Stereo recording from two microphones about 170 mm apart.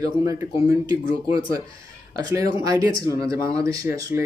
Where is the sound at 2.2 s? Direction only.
20° right (ahead or behind).